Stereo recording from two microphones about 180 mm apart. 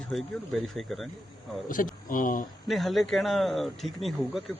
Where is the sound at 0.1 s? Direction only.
Centre (ahead or behind).